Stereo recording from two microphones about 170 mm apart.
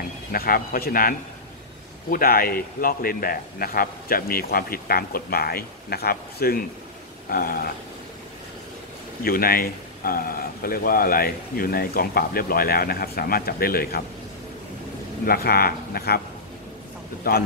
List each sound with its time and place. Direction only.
0.3 s a man's voice: 60° left (ahead or behind)
9.2 s a man's voice: 60° left (ahead or behind)
15.2 s a man's voice: 65° left (ahead or behind)